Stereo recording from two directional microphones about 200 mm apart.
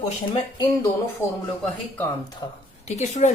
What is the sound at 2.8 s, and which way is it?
Speech, 35° left (ahead or behind).